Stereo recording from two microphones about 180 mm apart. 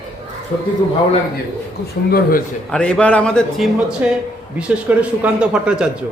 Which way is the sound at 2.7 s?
5° left (ahead or behind).